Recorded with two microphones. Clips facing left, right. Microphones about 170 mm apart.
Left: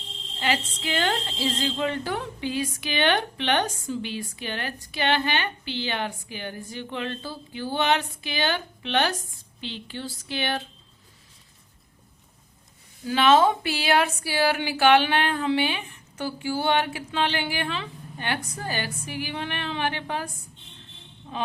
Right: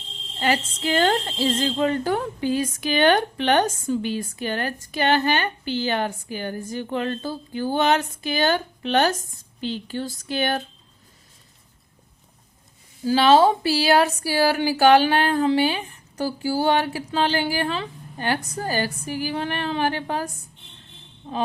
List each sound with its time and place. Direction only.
0.3 s a woman's voice: 45° right (ahead or behind)
13.1 s speech: 35° right (ahead or behind)
21.3 s a sound: 35° right (ahead or behind)